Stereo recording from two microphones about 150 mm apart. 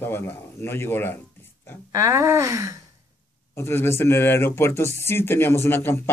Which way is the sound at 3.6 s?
15° left (ahead or behind).